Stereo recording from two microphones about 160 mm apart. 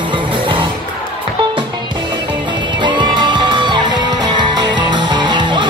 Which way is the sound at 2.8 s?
30° right (ahead or behind).